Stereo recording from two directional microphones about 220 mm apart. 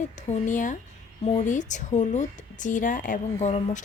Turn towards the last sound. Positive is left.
turn(degrees=35)  # may be behind; listen again after turning